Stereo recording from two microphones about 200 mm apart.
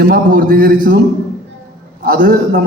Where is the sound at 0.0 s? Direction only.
45° right (ahead or behind).